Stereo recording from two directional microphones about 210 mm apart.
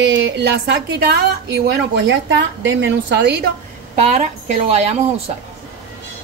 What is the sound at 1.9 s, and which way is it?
A woman's voice, 60° right (ahead or behind).